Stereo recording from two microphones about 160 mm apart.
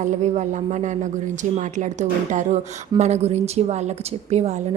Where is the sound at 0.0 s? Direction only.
50° right (ahead or behind).